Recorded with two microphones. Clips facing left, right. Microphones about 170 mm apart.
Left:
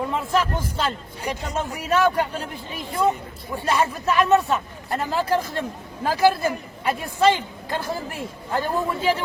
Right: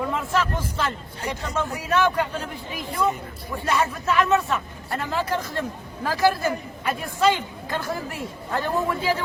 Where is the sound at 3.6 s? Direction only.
35° left (ahead or behind).